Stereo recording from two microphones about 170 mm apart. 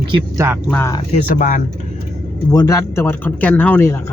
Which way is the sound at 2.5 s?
20° left (ahead or behind).